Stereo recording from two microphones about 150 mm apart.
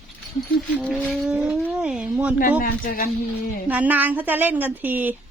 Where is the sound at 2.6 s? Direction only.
70° left (ahead or behind).